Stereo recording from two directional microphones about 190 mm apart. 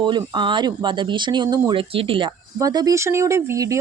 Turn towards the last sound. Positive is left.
turn(degrees=-15)  # may be behind; listen again after turning